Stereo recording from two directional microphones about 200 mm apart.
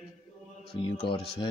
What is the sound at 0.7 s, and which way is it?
Speech, 30° left (ahead or behind).